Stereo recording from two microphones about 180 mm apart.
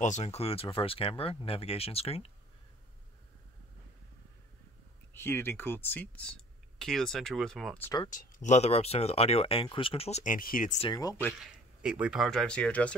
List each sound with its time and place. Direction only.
0.0 s speech: 40° left (ahead or behind)
5.1 s speech: 10° left (ahead or behind)
8.1 s speech: 45° left (ahead or behind)
10.8 s speech: 25° left (ahead or behind)
11.8 s speech: 5° right (ahead or behind)